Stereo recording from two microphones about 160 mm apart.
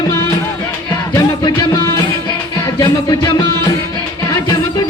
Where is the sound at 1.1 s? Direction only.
20° left (ahead or behind).